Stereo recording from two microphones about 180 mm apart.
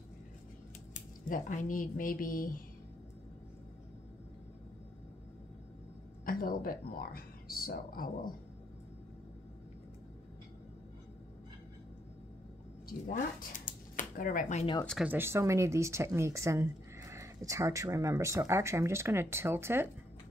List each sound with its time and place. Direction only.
0.9 s speech: 45° left (ahead or behind)
6.2 s speech: 55° left (ahead or behind)
12.8 s speech: 50° left (ahead or behind)
15.0 s speech: 15° right (ahead or behind)